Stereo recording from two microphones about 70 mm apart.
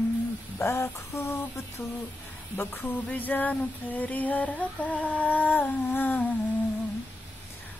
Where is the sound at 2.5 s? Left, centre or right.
Left.